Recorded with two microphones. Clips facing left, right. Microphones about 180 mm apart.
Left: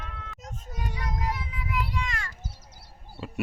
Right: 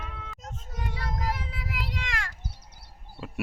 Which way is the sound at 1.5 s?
80° right.